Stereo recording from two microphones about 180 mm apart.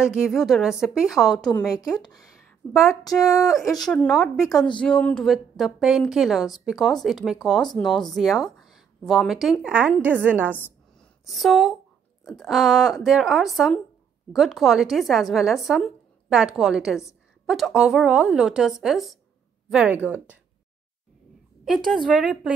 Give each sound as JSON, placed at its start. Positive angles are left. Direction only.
{"t": 0.1, "sound": "speech", "side_deg": 0}
{"t": 1.5, "sound": "a woman's voice", "side_deg": 15}
{"t": 2.1, "sound": "a sound", "side_deg": 0}
{"t": 3.0, "sound": "a woman's voice", "side_deg": 20}
{"t": 3.8, "sound": "a woman's voice", "side_deg": 5}
{"t": 21.6, "sound": "speech", "side_deg": 0}